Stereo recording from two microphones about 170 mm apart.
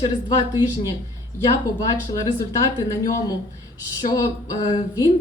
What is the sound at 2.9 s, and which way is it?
A woman's voice, 20° left (ahead or behind).